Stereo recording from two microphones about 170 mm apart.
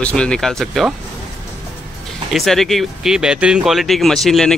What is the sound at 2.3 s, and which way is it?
Speech, centre (ahead or behind).